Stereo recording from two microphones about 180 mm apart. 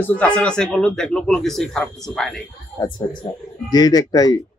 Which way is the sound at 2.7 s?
25° left (ahead or behind).